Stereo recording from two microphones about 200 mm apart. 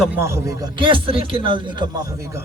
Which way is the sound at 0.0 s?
10° right (ahead or behind).